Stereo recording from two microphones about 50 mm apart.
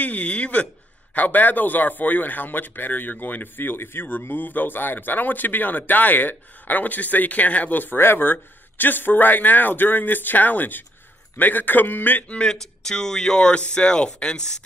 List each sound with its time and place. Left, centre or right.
0.0 s a sound: left
1.1 s speech: left
12.3 s speech: centre